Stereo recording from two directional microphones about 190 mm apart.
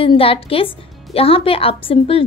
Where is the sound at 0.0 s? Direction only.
30° left (ahead or behind).